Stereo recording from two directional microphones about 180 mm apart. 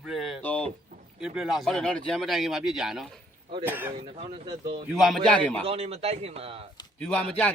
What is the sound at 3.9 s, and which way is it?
Speech, 30° right (ahead or behind).